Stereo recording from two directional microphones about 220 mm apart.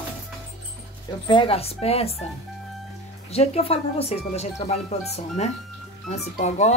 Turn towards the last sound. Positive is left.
turn(degrees=30)  # may be behind; listen again after turning